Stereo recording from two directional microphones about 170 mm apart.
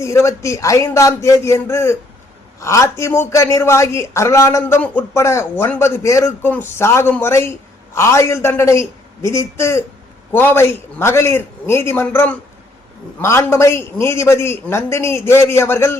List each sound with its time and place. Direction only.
0.0 s a man's voice: 15° left (ahead or behind)